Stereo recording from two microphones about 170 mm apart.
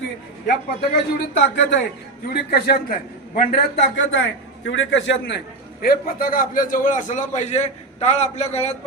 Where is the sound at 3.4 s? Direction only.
75° left (ahead or behind).